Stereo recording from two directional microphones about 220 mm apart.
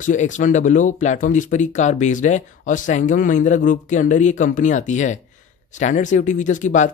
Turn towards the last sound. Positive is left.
turn(degrees=35)  # may be behind; listen again after turning